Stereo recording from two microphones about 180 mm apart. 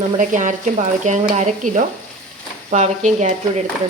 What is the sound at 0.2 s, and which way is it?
A woman's voice, 45° right (ahead or behind).